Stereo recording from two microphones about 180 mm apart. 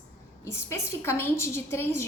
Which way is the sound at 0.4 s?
15° left (ahead or behind).